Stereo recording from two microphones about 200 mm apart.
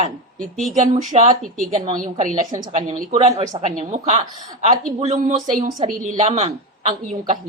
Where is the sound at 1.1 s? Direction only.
30° right (ahead or behind).